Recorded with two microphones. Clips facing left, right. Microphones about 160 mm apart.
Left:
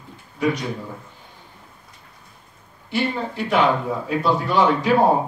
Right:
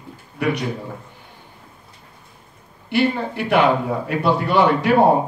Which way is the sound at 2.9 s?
60° right (ahead or behind).